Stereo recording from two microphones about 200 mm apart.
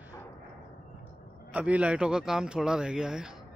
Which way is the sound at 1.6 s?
5° right (ahead or behind).